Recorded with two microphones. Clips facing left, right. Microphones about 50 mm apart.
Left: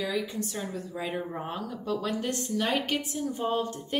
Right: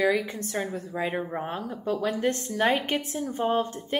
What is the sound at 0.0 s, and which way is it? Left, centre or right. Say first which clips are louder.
A woman's voice: right 6 dB; right.